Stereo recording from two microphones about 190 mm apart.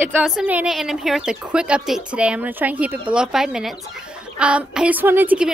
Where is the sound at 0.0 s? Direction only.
5° right (ahead or behind).